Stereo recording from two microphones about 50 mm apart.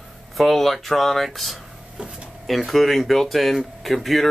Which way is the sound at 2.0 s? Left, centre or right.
Right.